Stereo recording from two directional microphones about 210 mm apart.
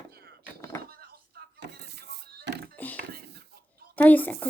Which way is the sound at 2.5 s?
55° right (ahead or behind).